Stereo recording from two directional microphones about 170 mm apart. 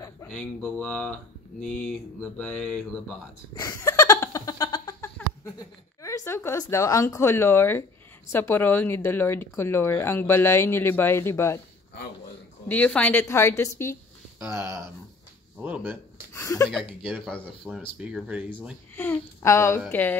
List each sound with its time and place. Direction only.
0.3 s speech: 5° left (ahead or behind)
3.5 s a sound: 20° left (ahead or behind)
5.0 s a sound: 10° left (ahead or behind)
6.0 s speech: 15° left (ahead or behind)
12.6 s speech: 10° left (ahead or behind)
14.4 s speech: 10° right (ahead or behind)
16.3 s speech: 15° left (ahead or behind)
16.6 s speech: centre (ahead or behind)
18.9 s speech: 15° left (ahead or behind)